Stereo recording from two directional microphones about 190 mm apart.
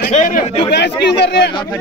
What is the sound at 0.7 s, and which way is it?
Speech, 65° left (ahead or behind).